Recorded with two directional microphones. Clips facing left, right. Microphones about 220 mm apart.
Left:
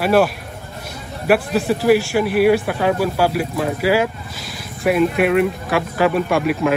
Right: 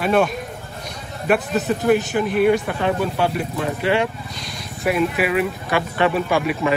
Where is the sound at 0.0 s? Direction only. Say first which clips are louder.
Left 3 dB; 5° left (ahead or behind).